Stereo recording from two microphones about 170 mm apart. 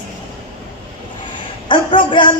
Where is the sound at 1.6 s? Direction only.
30° left (ahead or behind).